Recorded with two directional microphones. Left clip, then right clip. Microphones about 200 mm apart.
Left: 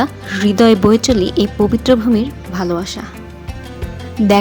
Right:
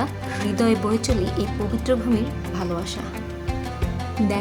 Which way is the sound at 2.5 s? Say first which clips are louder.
Left 9 dB; 30° left (ahead or behind).